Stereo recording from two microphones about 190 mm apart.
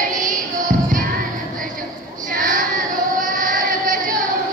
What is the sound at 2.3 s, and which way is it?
Child singing, 45° right (ahead or behind).